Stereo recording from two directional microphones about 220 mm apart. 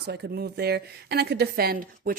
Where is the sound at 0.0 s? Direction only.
45° right (ahead or behind).